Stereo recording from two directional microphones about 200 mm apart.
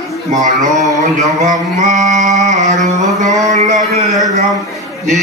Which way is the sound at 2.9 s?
35° right (ahead or behind).